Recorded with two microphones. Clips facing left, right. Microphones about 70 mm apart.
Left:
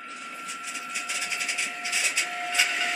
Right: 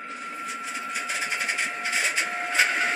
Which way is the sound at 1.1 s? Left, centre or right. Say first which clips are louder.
Right 4 dB; right.